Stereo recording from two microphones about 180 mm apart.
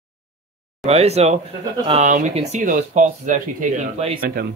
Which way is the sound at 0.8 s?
35° right (ahead or behind).